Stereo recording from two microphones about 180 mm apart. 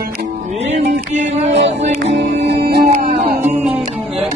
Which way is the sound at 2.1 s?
70° right (ahead or behind).